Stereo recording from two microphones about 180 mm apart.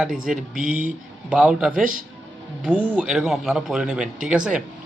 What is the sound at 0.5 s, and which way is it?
Speech, 50° right (ahead or behind).